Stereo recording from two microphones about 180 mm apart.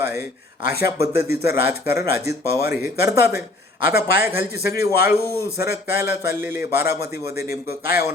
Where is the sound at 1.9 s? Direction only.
15° right (ahead or behind).